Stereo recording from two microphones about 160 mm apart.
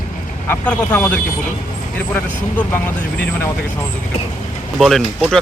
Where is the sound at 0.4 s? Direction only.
10° left (ahead or behind).